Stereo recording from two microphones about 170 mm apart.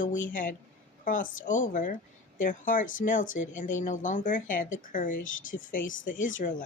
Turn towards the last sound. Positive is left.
turn(degrees=50)  # may be behind; listen again after turning